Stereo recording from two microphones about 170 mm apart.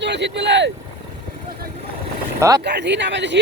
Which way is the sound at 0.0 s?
90° right.